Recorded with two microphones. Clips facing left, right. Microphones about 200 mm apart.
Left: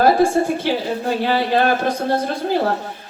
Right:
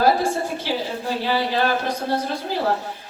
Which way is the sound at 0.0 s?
55° left (ahead or behind).